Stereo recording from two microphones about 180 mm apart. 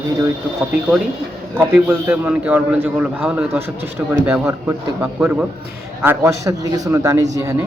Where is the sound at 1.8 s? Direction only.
10° right (ahead or behind).